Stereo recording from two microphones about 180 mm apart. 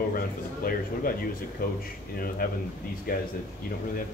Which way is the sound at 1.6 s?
55° left (ahead or behind).